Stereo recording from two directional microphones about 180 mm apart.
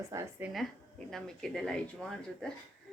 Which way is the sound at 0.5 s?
Centre (ahead or behind).